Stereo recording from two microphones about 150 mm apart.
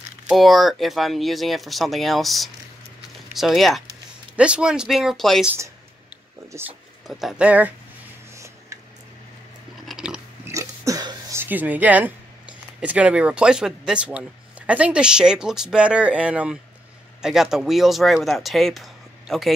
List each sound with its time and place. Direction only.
0.3 s speech: centre (ahead or behind)
7.1 s speech: centre (ahead or behind)
9.8 s ratchet: 5° right (ahead or behind)
10.4 s burping: 20° right (ahead or behind)
11.3 s speech: 10° right (ahead or behind)